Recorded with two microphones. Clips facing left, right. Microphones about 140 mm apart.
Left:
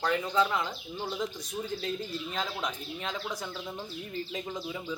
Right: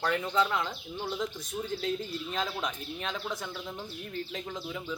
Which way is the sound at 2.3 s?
Centre (ahead or behind).